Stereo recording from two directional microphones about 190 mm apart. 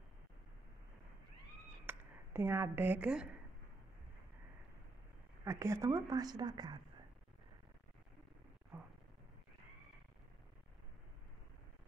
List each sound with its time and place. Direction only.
1.9 s speech: 10° right (ahead or behind)
5.4 s speech: 15° right (ahead or behind)